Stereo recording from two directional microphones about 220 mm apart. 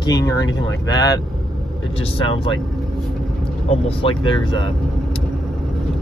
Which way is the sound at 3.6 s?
25° left (ahead or behind).